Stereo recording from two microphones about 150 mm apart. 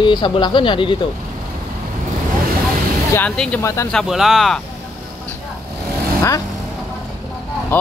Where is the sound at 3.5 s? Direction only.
20° left (ahead or behind).